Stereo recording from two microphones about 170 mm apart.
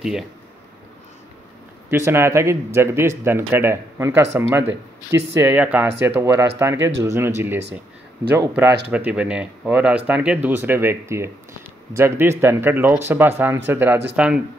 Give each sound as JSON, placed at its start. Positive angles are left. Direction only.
{"t": 1.9, "sound": "speech", "side_deg": -15}
{"t": 4.6, "sound": "speech", "side_deg": -90}
{"t": 5.3, "sound": "speech", "side_deg": -10}